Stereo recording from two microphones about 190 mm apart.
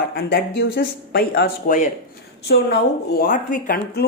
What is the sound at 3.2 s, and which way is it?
Speech, 45° left (ahead or behind).